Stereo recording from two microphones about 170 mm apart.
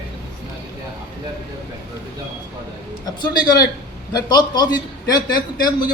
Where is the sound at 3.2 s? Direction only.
25° left (ahead or behind).